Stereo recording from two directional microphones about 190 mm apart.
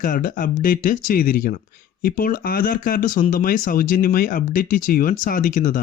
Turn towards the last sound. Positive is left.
turn(degrees=45)  # may be behind; listen again after turning